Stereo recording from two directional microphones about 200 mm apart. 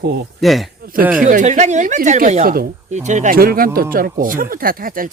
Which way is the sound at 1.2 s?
40° right (ahead or behind).